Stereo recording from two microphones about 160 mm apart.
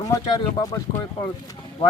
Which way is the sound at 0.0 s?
20° left (ahead or behind).